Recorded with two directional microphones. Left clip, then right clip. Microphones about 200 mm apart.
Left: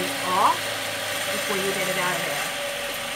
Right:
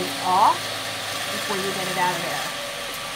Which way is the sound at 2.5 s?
5° left (ahead or behind).